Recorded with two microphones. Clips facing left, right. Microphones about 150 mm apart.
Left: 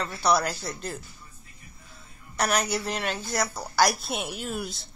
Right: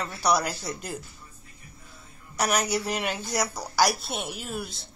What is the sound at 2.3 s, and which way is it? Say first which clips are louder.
A woman's voice: even; 5° right (ahead or behind).